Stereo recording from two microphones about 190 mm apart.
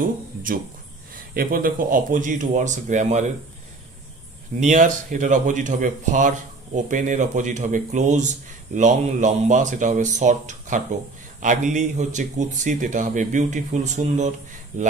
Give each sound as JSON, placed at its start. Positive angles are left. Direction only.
{"t": 0.0, "sound": "speech", "side_deg": -45}
{"t": 4.6, "sound": "speech", "side_deg": -40}